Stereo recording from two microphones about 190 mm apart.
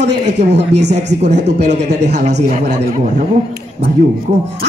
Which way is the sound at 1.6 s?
60° right (ahead or behind).